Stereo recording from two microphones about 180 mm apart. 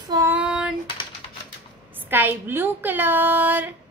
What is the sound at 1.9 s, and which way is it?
A child's voice, 10° right (ahead or behind).